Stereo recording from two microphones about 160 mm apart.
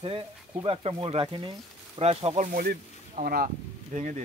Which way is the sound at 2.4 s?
70° right (ahead or behind).